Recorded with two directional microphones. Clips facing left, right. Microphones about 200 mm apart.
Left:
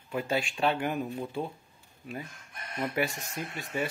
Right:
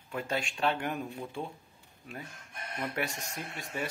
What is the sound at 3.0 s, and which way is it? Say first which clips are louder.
Speech: left 5 dB; 5° left (ahead or behind).